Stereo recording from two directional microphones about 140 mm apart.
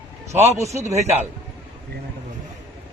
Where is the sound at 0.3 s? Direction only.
20° right (ahead or behind).